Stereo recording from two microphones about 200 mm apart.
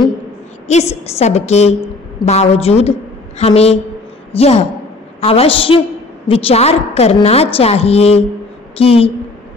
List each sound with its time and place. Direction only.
0.7 s a woman's voice: 30° left (ahead or behind)